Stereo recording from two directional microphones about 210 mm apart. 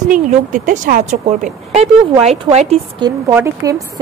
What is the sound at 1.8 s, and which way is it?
Speech, 30° right (ahead or behind).